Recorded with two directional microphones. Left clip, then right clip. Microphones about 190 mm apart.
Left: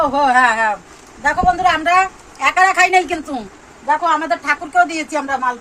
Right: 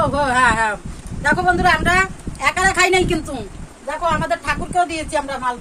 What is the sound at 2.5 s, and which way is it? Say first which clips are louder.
Speech: left 4 dB; 20° right (ahead or behind).